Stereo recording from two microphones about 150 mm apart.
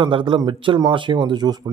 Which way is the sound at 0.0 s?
35° right (ahead or behind).